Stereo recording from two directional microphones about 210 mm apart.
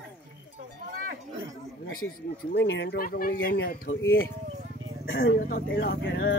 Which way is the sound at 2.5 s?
60° left (ahead or behind).